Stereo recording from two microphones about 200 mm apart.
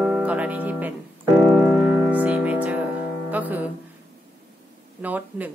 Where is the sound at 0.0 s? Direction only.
5° right (ahead or behind).